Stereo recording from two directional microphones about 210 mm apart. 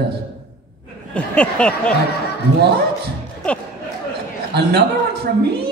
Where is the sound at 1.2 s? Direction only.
5° left (ahead or behind).